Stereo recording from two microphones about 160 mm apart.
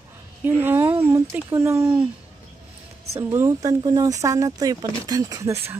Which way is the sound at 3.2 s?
15° right (ahead or behind).